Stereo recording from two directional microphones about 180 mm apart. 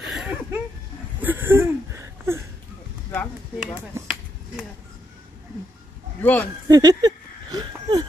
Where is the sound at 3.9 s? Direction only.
15° right (ahead or behind).